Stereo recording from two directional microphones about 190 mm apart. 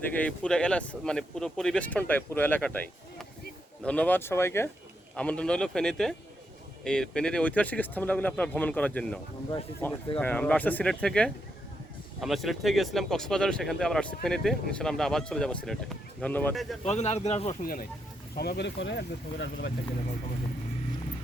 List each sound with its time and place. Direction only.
0.2 s speech: 5° left (ahead or behind)
16.8 s speech: 35° left (ahead or behind)
18.3 s speech: 60° left (ahead or behind)